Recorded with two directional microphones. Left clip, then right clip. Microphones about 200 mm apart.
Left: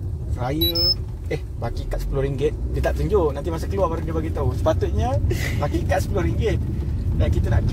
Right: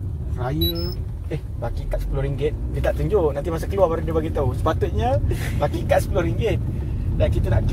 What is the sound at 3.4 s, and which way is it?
Speech, 5° right (ahead or behind).